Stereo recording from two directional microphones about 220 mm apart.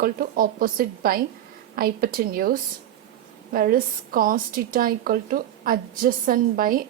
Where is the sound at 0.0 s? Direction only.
40° right (ahead or behind).